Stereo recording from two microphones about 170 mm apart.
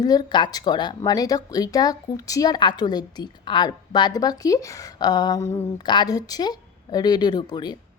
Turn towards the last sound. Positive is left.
turn(degrees=25)  # may be behind; listen again after turning